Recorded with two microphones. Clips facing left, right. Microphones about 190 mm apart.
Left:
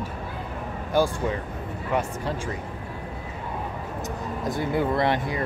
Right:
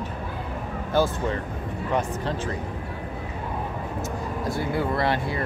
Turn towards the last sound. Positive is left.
turn(degrees=20)  # may be behind; listen again after turning